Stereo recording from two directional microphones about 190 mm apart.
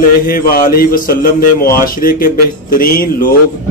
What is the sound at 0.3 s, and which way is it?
A man's voice, 50° left (ahead or behind).